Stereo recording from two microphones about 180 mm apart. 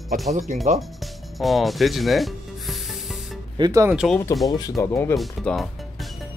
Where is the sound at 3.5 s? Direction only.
20° right (ahead or behind).